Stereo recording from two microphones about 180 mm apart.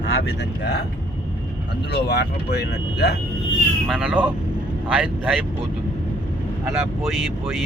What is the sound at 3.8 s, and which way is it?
Speech, 5° right (ahead or behind).